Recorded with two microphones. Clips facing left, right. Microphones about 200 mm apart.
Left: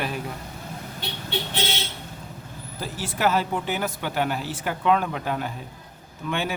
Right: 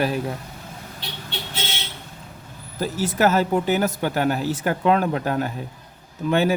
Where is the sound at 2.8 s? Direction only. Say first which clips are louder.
Right 5 dB; 45° right (ahead or behind).